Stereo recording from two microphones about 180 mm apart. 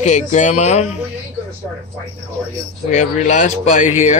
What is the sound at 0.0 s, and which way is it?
Speech, 40° left (ahead or behind).